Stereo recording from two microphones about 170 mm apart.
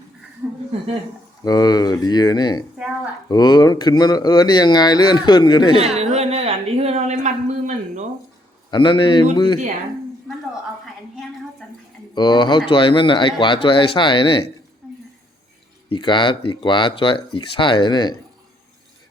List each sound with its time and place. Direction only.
0.4 s a sound: 15° right (ahead or behind)
1.5 s speech: 25° left (ahead or behind)
5.8 s a sound: 40° right (ahead or behind)
8.7 s speech: 25° left (ahead or behind)
12.1 s speech: 25° left (ahead or behind)
15.9 s speech: 30° left (ahead or behind)